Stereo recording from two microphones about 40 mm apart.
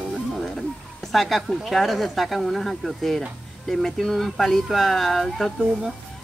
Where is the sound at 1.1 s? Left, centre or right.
Centre.